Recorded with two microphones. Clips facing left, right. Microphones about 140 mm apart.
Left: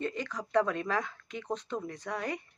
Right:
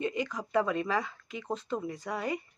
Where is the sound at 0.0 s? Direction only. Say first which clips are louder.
Right 3 dB; 10° right (ahead or behind).